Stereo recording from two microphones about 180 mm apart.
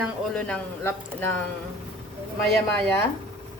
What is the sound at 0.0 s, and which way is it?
Speech, 5° left (ahead or behind).